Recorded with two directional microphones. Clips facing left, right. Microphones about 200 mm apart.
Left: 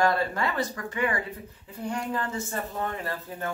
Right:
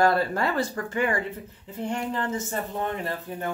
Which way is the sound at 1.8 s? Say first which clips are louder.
Right 2 dB; 25° right (ahead or behind).